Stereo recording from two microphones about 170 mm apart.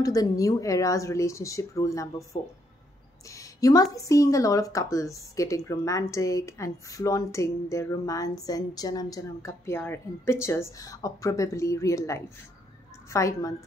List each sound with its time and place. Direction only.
0.0 s a woman's voice: 20° left (ahead or behind)
3.3 s a sound: 20° left (ahead or behind)
3.9 s a woman's voice: 20° left (ahead or behind)